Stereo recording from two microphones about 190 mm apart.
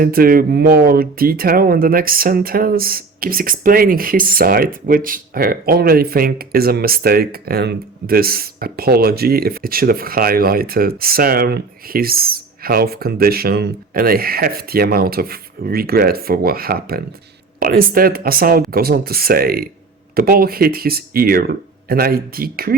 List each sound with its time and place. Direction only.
0.0 s speech: 50° right (ahead or behind)